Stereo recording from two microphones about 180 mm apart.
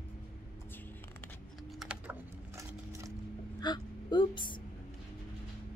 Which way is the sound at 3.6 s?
25° left (ahead or behind).